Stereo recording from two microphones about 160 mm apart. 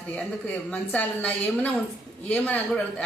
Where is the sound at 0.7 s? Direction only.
10° left (ahead or behind).